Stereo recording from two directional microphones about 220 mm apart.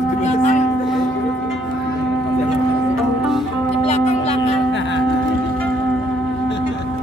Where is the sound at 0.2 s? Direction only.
30° left (ahead or behind).